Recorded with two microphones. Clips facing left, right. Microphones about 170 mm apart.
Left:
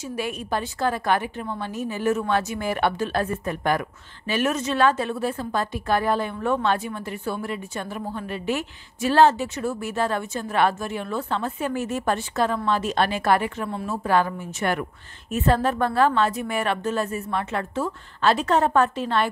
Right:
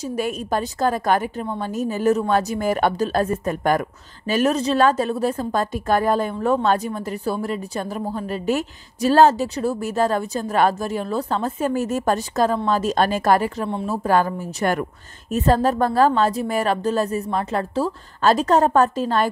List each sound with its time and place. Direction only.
0.0 s a woman's voice: 40° right (ahead or behind)